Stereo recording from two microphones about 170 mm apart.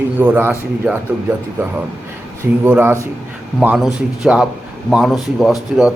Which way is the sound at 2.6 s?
10° right (ahead or behind).